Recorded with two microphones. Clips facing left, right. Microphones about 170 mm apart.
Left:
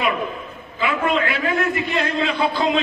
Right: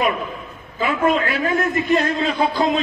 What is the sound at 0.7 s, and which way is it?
A man's voice, 40° right (ahead or behind).